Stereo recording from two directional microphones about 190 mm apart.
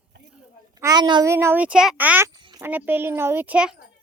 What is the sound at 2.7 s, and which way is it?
Speech, 10° right (ahead or behind).